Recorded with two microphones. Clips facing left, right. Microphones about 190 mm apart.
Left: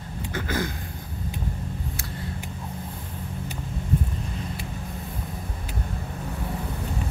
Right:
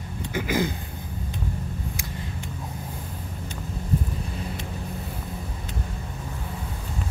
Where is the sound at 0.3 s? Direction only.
15° right (ahead or behind).